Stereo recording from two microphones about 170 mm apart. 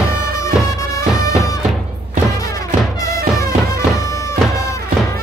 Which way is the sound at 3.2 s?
65° right (ahead or behind).